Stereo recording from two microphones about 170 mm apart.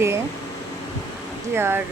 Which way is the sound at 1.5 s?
15° right (ahead or behind).